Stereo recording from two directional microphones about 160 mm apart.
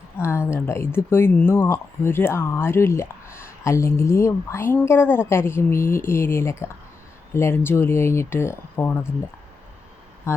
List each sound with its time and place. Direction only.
0.2 s speech: 15° left (ahead or behind)
10.3 s speech: 15° left (ahead or behind)